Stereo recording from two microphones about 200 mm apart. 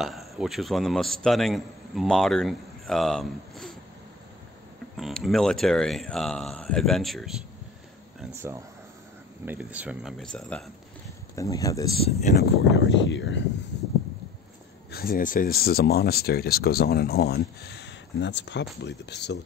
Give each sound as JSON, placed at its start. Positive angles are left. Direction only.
{"t": 0.0, "sound": "speech", "side_deg": 0}
{"t": 4.9, "sound": "speech", "side_deg": 0}
{"t": 8.4, "sound": "speech", "side_deg": -15}
{"t": 11.3, "sound": "speech", "side_deg": 15}
{"t": 12.0, "sound": "speech", "side_deg": 35}
{"t": 12.4, "sound": "speech", "side_deg": 60}
{"t": 14.9, "sound": "speech", "side_deg": 50}